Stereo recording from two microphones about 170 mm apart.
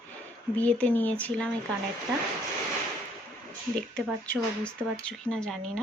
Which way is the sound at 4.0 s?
5° left (ahead or behind).